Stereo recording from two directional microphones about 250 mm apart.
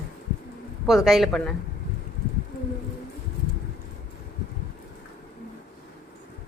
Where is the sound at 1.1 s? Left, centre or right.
Centre.